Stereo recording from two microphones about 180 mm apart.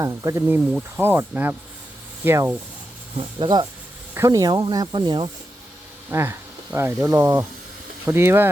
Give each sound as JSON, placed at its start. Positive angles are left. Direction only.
{"t": 0.0, "sound": "speech", "side_deg": -20}
{"t": 3.2, "sound": "speech", "side_deg": -25}
{"t": 6.1, "sound": "speech", "side_deg": -15}